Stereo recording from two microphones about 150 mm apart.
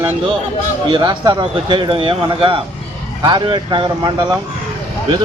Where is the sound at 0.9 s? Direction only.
30° right (ahead or behind).